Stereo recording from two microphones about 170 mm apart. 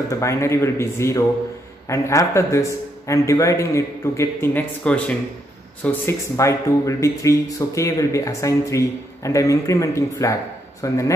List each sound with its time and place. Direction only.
0.1 s speech: 15° left (ahead or behind)